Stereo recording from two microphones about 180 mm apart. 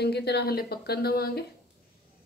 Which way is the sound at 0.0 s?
65° left (ahead or behind).